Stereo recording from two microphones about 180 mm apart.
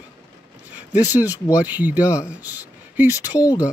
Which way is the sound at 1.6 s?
10° right (ahead or behind).